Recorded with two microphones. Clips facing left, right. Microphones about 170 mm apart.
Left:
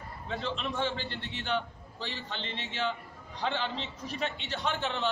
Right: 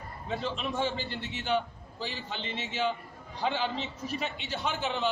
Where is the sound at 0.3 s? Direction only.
10° right (ahead or behind).